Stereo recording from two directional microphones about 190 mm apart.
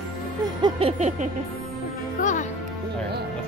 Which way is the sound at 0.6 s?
30° right (ahead or behind).